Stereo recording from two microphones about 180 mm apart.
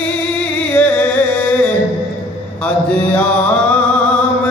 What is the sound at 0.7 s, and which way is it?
Music, 10° left (ahead or behind).